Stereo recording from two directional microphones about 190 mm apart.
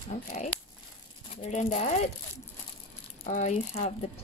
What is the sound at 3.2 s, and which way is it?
Speech, 40° left (ahead or behind).